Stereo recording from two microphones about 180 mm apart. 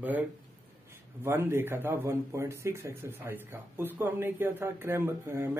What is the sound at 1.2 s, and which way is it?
A man's voice, 15° right (ahead or behind).